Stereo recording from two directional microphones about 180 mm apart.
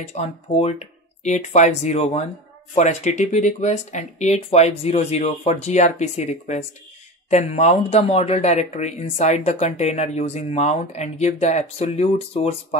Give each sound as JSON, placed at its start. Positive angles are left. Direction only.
{"t": 0.0, "sound": "speech", "side_deg": 35}